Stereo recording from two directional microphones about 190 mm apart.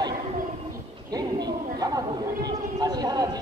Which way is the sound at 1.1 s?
20° right (ahead or behind).